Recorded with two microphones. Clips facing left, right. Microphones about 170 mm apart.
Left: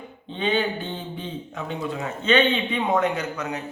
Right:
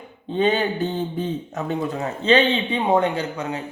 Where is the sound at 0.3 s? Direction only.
40° right (ahead or behind).